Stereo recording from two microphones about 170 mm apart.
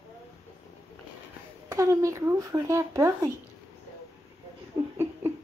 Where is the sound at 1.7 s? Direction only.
20° right (ahead or behind).